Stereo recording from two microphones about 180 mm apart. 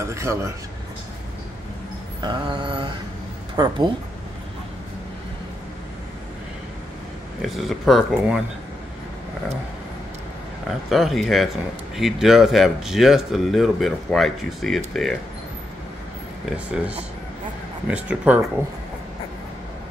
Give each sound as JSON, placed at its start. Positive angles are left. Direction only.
{"t": 0.0, "sound": "speech", "side_deg": -15}
{"t": 2.2, "sound": "mantra", "side_deg": -25}
{"t": 7.4, "sound": "speech", "side_deg": 0}
{"t": 10.9, "sound": "speech", "side_deg": 0}
{"t": 16.4, "sound": "speech", "side_deg": -5}